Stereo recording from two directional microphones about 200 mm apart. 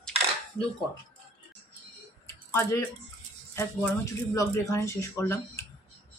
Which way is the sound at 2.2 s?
15° left (ahead or behind).